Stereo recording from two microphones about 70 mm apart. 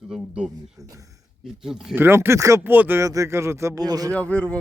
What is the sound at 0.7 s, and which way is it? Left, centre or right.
Speech, right.